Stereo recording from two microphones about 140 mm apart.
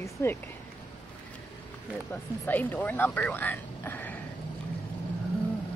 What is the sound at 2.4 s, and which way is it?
A woman's voice, 15° left (ahead or behind).